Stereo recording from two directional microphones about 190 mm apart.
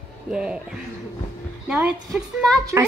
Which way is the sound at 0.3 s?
5° right (ahead or behind).